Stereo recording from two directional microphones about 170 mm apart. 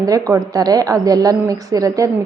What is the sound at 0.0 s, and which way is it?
A woman's voice, 20° right (ahead or behind).